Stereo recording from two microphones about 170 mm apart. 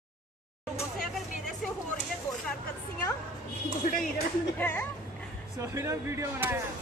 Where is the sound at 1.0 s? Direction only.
Centre (ahead or behind).